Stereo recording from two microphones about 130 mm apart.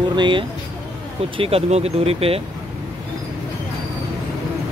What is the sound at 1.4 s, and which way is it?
Speech, 50° right (ahead or behind).